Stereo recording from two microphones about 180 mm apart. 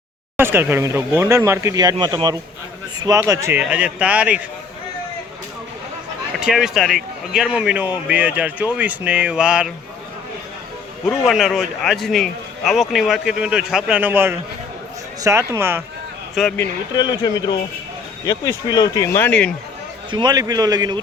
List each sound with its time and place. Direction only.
0.3 s speech: 15° right (ahead or behind)
6.4 s a man's voice: centre (ahead or behind)
11.1 s a man's voice: centre (ahead or behind)
16.3 s speech: centre (ahead or behind)
16.9 s speech: 25° left (ahead or behind)
20.1 s a man's voice: 25° right (ahead or behind)